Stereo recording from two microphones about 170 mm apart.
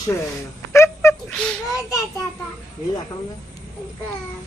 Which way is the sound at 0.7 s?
15° left (ahead or behind).